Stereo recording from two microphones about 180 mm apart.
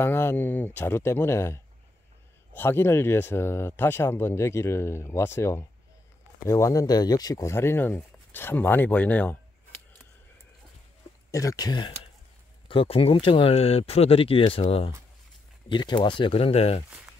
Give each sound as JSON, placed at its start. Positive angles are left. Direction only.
{"t": 0.0, "sound": "speech", "side_deg": 15}
{"t": 11.3, "sound": "speech", "side_deg": 20}